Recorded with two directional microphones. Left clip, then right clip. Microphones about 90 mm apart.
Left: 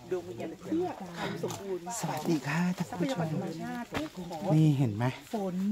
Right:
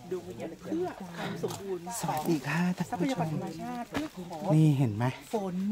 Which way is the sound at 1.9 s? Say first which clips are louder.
Right 2 dB; 15° right (ahead or behind).